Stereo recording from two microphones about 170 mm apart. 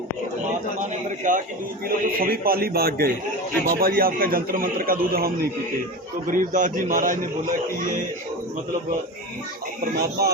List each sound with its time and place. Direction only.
0.8 s a sound: 50° right (ahead or behind)
2.0 s a man's voice: 60° right (ahead or behind)
10.0 s speech: 70° right (ahead or behind)